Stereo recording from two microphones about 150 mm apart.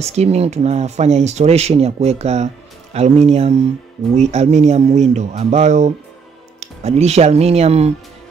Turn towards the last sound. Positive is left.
turn(degrees=-45)  # may be behind; listen again after turning